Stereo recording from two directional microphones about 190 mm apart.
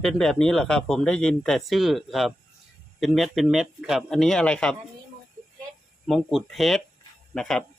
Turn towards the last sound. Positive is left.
turn(degrees=5)  # may be behind; listen again after turning